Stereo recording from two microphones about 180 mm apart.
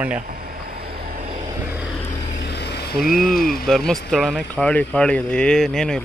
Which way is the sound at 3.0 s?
Centre (ahead or behind).